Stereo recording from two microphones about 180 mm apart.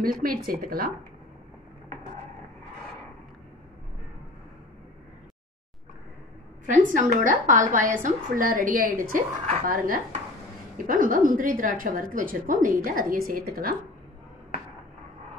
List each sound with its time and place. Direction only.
0.0 s a woman's voice: 55° right (ahead or behind)
6.6 s a woman's voice: 45° right (ahead or behind)